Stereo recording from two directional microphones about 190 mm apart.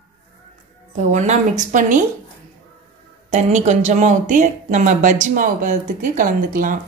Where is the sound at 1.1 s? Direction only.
40° right (ahead or behind).